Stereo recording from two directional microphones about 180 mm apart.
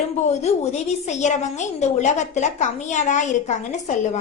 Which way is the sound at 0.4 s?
35° left (ahead or behind).